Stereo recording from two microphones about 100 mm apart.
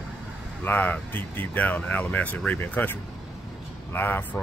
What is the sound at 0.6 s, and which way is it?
Speech, 15° left (ahead or behind).